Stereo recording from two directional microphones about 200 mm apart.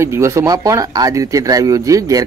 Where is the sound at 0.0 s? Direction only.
15° right (ahead or behind).